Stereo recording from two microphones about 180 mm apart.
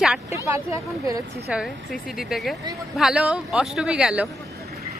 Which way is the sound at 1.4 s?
5° right (ahead or behind).